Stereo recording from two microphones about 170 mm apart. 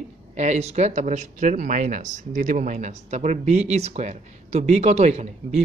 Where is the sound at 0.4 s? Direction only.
40° right (ahead or behind).